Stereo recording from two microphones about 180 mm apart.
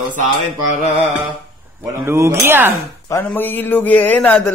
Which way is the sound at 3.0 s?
15° left (ahead or behind).